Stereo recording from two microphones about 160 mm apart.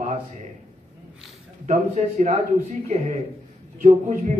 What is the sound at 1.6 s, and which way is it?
A man's voice, 50° right (ahead or behind).